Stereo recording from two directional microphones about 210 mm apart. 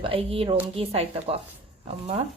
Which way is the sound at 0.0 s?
25° right (ahead or behind).